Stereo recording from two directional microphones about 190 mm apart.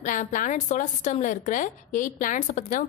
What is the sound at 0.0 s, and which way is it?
A woman's voice, 40° left (ahead or behind).